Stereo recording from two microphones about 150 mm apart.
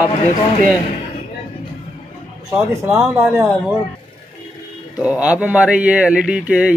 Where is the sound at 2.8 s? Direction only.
15° right (ahead or behind).